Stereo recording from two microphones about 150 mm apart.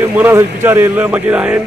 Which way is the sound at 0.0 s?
15° right (ahead or behind).